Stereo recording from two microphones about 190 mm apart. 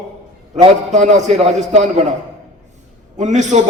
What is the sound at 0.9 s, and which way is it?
A man's voice, 40° right (ahead or behind).